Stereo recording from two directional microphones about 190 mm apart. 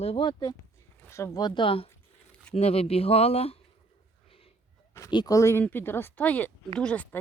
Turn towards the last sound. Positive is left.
turn(degrees=5)  # may be behind; listen again after turning